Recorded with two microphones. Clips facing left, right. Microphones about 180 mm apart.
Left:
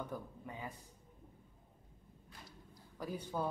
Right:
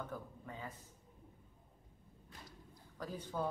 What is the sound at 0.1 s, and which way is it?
Speech, 15° left (ahead or behind).